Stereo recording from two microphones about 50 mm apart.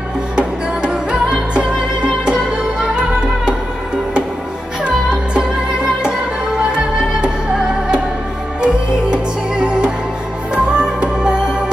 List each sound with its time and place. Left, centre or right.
0.4 s music: centre
4.8 s music: centre
7.2 s music: centre